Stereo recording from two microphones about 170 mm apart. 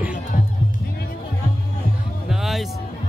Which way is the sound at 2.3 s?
Centre (ahead or behind).